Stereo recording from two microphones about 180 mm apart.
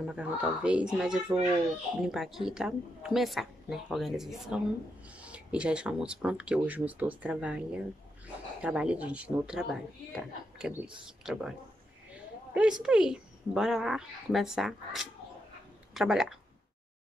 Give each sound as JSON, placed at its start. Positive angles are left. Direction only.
{"t": 0.0, "sound": "a woman's voice", "side_deg": -5}
{"t": 12.5, "sound": "a woman's voice", "side_deg": -5}